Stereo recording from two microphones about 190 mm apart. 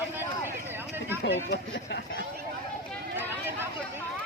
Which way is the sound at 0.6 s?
10° right (ahead or behind).